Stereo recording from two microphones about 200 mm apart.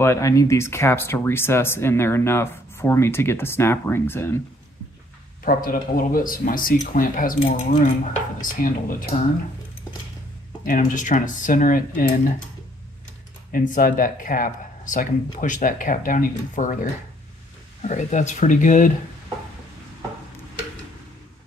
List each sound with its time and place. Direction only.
0.0 s speech: 15° left (ahead or behind)
5.4 s speech: 45° left (ahead or behind)
10.6 s speech: 40° left (ahead or behind)
13.5 s speech: 45° left (ahead or behind)